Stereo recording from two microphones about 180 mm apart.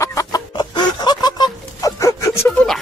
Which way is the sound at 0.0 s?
20° left (ahead or behind).